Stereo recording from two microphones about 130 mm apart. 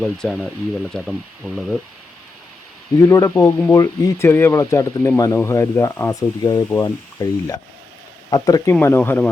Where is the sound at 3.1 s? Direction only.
25° left (ahead or behind).